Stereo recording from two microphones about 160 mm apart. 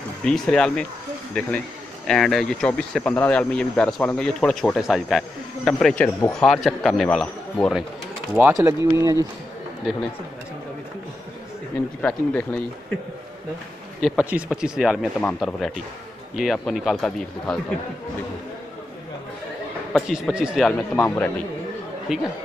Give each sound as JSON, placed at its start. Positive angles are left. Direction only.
{"t": 0.2, "sound": "speech", "side_deg": 5}
{"t": 8.4, "sound": "speech", "side_deg": -15}
{"t": 12.0, "sound": "speech", "side_deg": 10}
{"t": 14.0, "sound": "speech", "side_deg": -5}
{"t": 19.9, "sound": "speech", "side_deg": 0}
{"t": 20.7, "sound": "speech", "side_deg": 10}
{"t": 22.1, "sound": "speech", "side_deg": -5}